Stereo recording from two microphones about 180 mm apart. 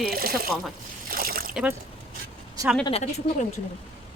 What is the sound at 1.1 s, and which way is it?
Splash, 55° right (ahead or behind).